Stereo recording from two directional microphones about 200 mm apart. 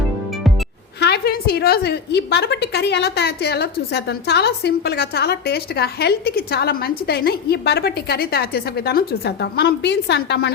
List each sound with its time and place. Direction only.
0.9 s a woman's voice: 55° left (ahead or behind)